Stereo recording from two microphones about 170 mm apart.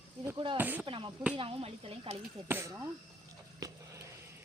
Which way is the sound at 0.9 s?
30° right (ahead or behind).